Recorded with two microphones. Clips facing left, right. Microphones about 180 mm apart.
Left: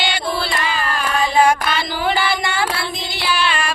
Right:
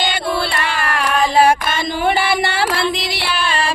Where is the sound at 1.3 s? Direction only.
50° right (ahead or behind); by 3.2 s 80° right.